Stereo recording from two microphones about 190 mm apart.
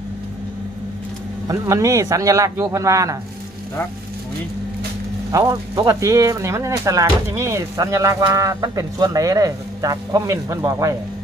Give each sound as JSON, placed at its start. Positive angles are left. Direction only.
{"t": 1.5, "sound": "speech", "side_deg": -15}
{"t": 5.3, "sound": "speech", "side_deg": -20}